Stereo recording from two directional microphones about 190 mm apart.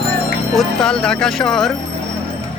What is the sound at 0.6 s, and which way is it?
Speech, 5° left (ahead or behind).